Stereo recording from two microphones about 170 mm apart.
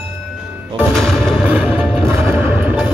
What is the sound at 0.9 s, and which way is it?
Music, centre (ahead or behind).